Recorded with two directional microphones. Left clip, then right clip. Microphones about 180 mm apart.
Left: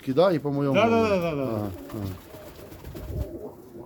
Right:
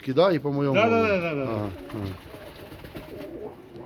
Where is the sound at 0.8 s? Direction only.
20° left (ahead or behind).